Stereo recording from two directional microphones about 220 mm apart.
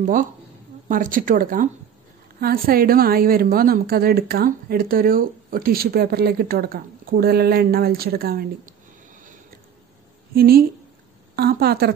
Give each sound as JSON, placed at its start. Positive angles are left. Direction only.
{"t": 0.0, "sound": "a woman's voice", "side_deg": -35}
{"t": 10.3, "sound": "a woman's voice", "side_deg": -45}